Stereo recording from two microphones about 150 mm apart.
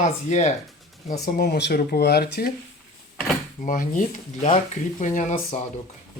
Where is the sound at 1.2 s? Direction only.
75° left (ahead or behind).